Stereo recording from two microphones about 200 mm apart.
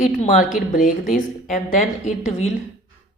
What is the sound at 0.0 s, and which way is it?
A man's voice, 35° left (ahead or behind).